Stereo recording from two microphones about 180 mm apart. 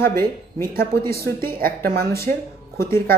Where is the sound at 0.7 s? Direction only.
55° right (ahead or behind).